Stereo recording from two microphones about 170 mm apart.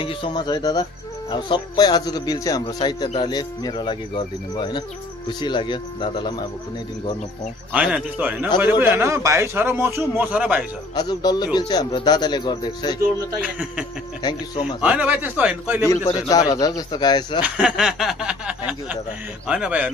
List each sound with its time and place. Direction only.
0.0 s speech: 30° left (ahead or behind)
7.7 s a man's voice: 5° right (ahead or behind)
11.0 s speech: 25° left (ahead or behind)
13.4 s a man's voice: 5° right (ahead or behind)
16.3 s speech: 20° left (ahead or behind)
17.6 s a sound: 5° right (ahead or behind)
19.4 s a man's voice: 5° right (ahead or behind)